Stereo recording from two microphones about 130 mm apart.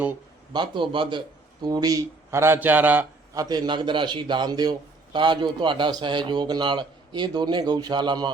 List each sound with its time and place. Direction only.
0.5 s a man's voice: 35° right (ahead or behind); by 3.1 s 15° right (ahead or behind)
3.3 s a man's voice: 30° right (ahead or behind)